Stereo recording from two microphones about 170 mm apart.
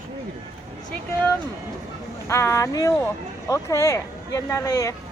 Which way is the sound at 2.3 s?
15° left (ahead or behind).